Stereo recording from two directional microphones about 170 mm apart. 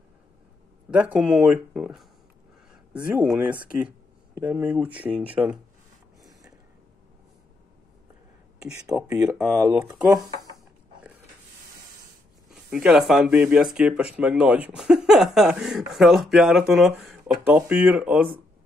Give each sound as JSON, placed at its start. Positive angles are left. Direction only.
{"t": 0.8, "sound": "speech", "side_deg": -10}
{"t": 8.6, "sound": "speech", "side_deg": -5}
{"t": 12.5, "sound": "speech", "side_deg": -5}